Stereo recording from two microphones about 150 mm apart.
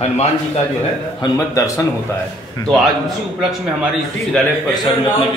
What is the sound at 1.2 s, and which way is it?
Speech, 20° left (ahead or behind).